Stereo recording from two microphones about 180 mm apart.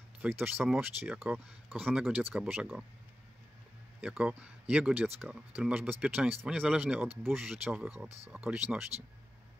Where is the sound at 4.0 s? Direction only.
5° right (ahead or behind).